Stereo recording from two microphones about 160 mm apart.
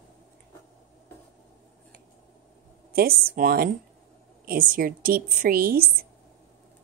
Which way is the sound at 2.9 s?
70° right (ahead or behind).